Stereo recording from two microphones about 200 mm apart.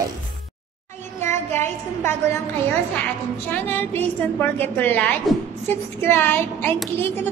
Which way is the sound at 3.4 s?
10° left (ahead or behind).